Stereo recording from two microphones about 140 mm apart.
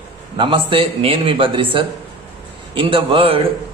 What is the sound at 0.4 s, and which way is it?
A man's voice, 35° right (ahead or behind).